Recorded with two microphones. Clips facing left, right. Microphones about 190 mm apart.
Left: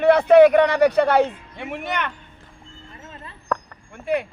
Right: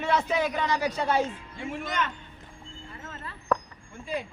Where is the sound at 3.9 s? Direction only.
65° left (ahead or behind).